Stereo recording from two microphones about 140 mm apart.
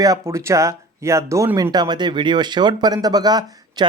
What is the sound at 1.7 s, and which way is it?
Speech, 30° right (ahead or behind).